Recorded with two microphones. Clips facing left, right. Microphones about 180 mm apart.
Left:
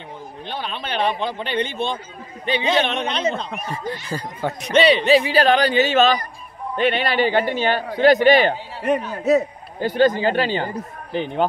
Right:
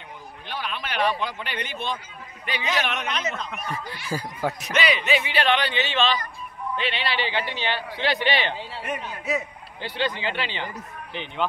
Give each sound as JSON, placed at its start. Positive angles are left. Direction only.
{"t": 0.5, "sound": "speech", "side_deg": 30}
{"t": 4.1, "sound": "speech", "side_deg": -10}
{"t": 4.7, "sound": "a man's voice", "side_deg": 30}